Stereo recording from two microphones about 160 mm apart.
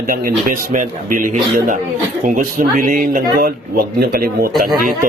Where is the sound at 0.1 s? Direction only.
60° right (ahead or behind).